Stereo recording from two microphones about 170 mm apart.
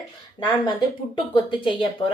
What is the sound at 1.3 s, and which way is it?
Speech, 30° left (ahead or behind).